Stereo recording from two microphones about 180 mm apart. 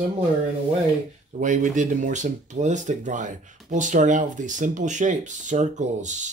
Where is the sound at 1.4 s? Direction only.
45° right (ahead or behind).